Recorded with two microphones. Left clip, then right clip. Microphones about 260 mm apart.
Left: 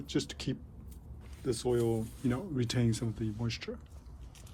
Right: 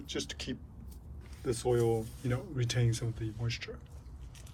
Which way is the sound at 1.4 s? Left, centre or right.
Centre.